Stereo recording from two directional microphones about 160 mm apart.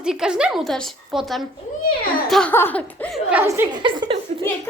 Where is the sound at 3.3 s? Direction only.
10° right (ahead or behind).